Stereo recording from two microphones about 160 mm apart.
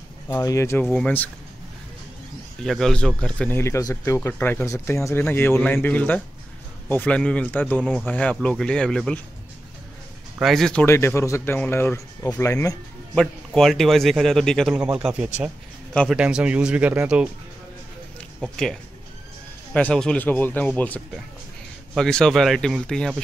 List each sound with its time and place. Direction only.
0.3 s speech: 20° left (ahead or behind)
0.8 s speech: 5° left (ahead or behind)
2.6 s speech: centre (ahead or behind)
10.4 s speech: centre (ahead or behind)
10.9 s speech: 15° left (ahead or behind)
13.5 s speech: centre (ahead or behind)
15.9 s speech: 5° left (ahead or behind)
16.2 s speech: 5° right (ahead or behind)
18.4 s speech: 5° left (ahead or behind)